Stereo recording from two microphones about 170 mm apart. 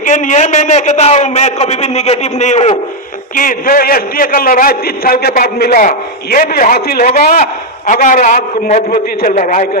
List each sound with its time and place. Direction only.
0.0 s a man's voice: 45° left (ahead or behind)
3.3 s a man's voice: 55° left (ahead or behind)